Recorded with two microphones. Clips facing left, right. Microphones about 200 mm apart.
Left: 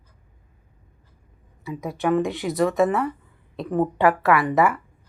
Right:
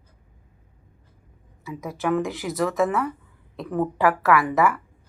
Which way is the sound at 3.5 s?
25° left (ahead or behind).